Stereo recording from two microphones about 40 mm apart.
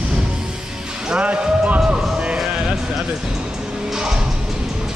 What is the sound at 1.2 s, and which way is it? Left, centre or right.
Music, right.